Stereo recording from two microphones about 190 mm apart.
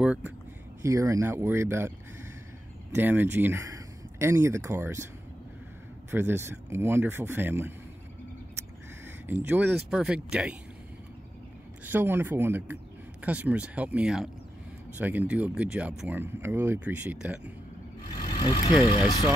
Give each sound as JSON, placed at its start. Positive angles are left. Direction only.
{"t": 0.0, "sound": "speech", "side_deg": -5}
{"t": 6.0, "sound": "speech", "side_deg": -10}
{"t": 9.2, "sound": "speech", "side_deg": -10}
{"t": 11.8, "sound": "speech", "side_deg": -10}
{"t": 18.1, "sound": "vehicle", "side_deg": 25}